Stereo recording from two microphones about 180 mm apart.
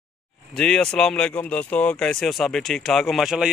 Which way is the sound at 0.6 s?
5° left (ahead or behind).